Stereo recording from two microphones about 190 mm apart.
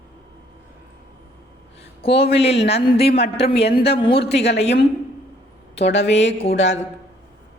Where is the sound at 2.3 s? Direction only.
35° left (ahead or behind).